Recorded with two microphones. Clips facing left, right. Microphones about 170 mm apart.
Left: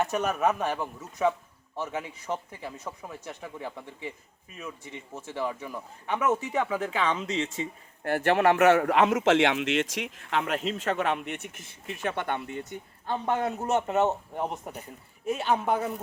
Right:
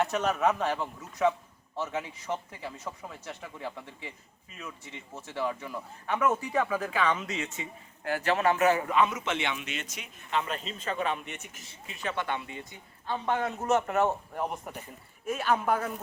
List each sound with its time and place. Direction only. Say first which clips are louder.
0.0 s a man's voice: left 1 dB; 10° left (ahead or behind); by 7.7 s 30° left (ahead or behind)
8.1 s speech: left 4 dB; 60° left (ahead or behind)
13.4 s a man's voice: even; 30° left (ahead or behind)